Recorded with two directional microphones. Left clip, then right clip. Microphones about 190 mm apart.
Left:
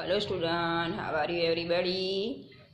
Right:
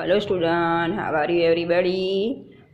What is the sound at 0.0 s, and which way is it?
A woman's voice, 35° right (ahead or behind).